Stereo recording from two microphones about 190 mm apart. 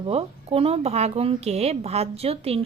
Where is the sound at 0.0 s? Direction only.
30° right (ahead or behind).